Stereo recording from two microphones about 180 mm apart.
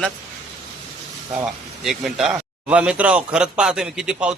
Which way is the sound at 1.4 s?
Centre (ahead or behind).